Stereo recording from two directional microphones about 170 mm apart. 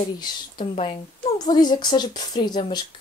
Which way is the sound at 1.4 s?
25° left (ahead or behind).